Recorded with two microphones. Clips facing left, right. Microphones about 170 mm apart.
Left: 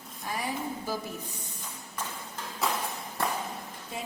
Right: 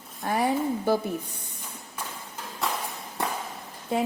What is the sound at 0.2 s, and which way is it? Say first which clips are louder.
Speech: right 9 dB; 60° right (ahead or behind).